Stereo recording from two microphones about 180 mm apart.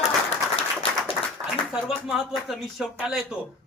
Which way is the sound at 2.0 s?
Centre (ahead or behind).